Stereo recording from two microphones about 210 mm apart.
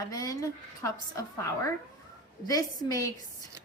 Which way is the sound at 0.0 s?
15° left (ahead or behind).